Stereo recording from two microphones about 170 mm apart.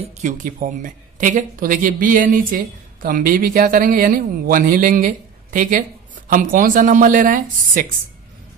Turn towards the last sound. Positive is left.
turn(degrees=-50)  # may be behind; listen again after turning